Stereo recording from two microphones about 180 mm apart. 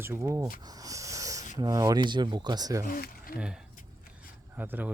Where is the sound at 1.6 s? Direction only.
20° right (ahead or behind).